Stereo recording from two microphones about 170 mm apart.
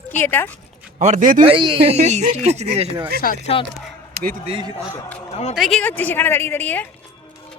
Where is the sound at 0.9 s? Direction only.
45° right (ahead or behind).